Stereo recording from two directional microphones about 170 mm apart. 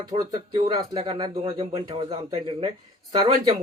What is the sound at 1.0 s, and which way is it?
Speech, 35° right (ahead or behind).